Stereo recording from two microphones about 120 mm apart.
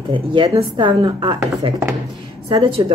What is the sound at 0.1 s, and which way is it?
Speech, 45° right (ahead or behind).